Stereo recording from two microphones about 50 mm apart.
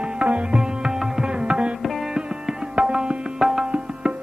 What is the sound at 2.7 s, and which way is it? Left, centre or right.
Music, centre.